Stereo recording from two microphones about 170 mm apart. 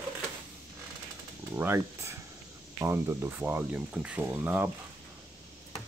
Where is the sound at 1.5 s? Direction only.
15° right (ahead or behind).